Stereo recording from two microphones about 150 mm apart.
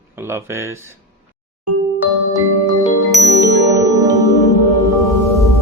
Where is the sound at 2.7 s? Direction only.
25° left (ahead or behind).